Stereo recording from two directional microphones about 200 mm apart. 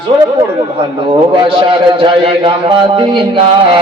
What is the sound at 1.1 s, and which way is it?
A man's voice, 25° right (ahead or behind).